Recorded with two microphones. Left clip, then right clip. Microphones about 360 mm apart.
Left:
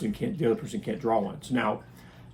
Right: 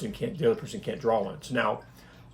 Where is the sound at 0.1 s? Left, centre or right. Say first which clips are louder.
Right 2 dB; centre.